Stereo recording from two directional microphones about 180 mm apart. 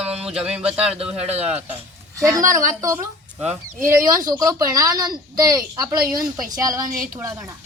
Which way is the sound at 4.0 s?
20° right (ahead or behind).